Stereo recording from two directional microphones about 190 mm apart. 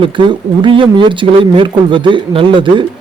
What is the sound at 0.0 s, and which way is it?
Speech, 25° right (ahead or behind).